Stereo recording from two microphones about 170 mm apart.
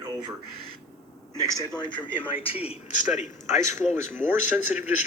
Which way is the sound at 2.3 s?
35° left (ahead or behind).